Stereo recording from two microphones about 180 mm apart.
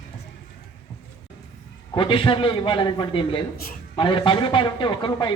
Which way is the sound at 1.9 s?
30° left (ahead or behind).